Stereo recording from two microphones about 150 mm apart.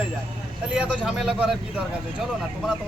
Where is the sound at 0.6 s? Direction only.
10° right (ahead or behind).